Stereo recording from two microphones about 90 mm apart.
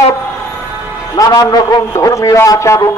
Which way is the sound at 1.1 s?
45° left (ahead or behind).